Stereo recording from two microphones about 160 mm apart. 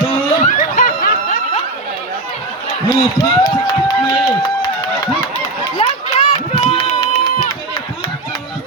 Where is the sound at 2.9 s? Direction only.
25° left (ahead or behind).